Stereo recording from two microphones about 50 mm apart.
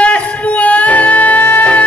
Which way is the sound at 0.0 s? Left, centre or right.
Left.